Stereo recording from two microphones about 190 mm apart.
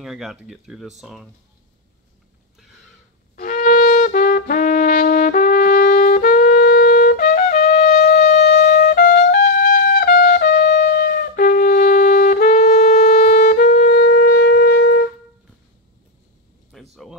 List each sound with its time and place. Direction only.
0.0 s speech: centre (ahead or behind)
3.3 s wind instrument: 45° left (ahead or behind)
8.5 s trumpet: 40° left (ahead or behind)
13.4 s wind instrument: 45° left (ahead or behind)
16.9 s a sound: centre (ahead or behind)